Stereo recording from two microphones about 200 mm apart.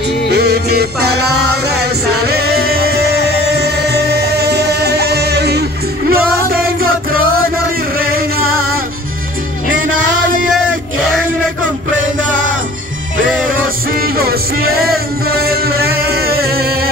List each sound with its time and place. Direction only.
0.3 s music: 55° right (ahead or behind)
13.9 s music: 50° right (ahead or behind)